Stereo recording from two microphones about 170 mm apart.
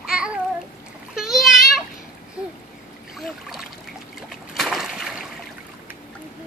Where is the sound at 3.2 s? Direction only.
Centre (ahead or behind).